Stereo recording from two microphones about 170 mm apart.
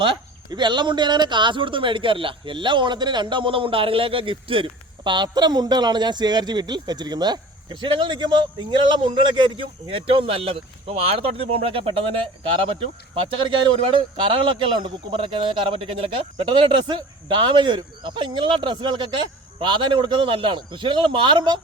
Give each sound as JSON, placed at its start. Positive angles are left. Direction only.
{"t": 0.0, "sound": "speech", "side_deg": -30}